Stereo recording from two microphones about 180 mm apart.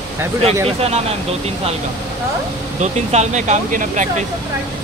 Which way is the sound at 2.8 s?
40° right (ahead or behind).